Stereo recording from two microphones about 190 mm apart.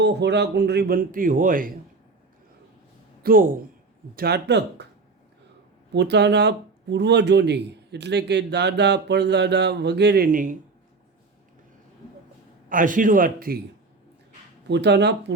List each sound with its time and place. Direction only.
0.0 s a man's voice: 65° right (ahead or behind); by 1.7 s 45° right (ahead or behind)
3.2 s a man's voice: 45° right (ahead or behind); by 4.9 s 65° right (ahead or behind)
5.9 s a man's voice: 65° right (ahead or behind); by 10.6 s 45° right (ahead or behind)
12.6 s a man's voice: 45° right (ahead or behind)
14.7 s a man's voice: 65° right (ahead or behind)